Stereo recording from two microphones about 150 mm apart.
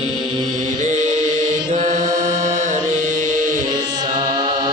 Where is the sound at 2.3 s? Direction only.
55° right (ahead or behind).